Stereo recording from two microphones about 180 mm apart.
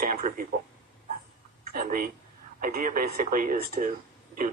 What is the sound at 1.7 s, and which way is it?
Speech, 50° right (ahead or behind).